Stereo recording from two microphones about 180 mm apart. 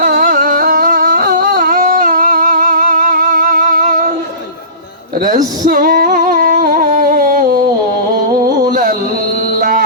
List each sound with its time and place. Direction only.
0.0 s a sound: 50° right (ahead or behind)
5.2 s singing: 45° right (ahead or behind)
8.7 s carnatic music: 50° right (ahead or behind)
9.6 s music: 55° right (ahead or behind)